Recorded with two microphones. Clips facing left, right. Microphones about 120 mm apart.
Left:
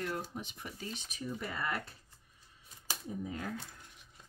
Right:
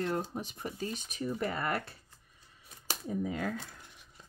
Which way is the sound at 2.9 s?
85° right.